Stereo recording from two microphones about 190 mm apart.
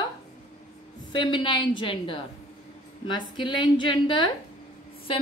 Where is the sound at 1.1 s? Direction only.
25° left (ahead or behind).